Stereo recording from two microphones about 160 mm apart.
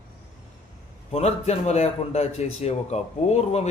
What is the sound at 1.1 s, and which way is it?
Speech, 45° left (ahead or behind).